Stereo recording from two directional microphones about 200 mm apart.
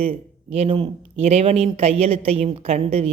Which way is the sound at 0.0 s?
30° right (ahead or behind).